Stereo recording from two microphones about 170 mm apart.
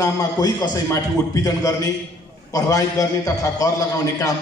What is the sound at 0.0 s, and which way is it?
A man's voice, 20° left (ahead or behind).